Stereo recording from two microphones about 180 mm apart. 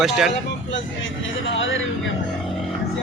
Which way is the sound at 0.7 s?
90° left.